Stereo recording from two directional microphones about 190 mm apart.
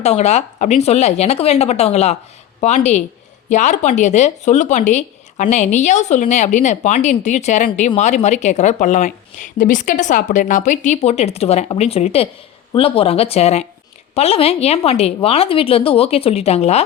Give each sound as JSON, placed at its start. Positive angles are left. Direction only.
{"t": 0.0, "sound": "speech", "side_deg": 35}